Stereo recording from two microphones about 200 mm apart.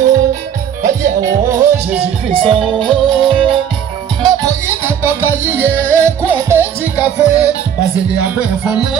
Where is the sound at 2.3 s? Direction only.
25° right (ahead or behind); by 6.7 s 10° right (ahead or behind).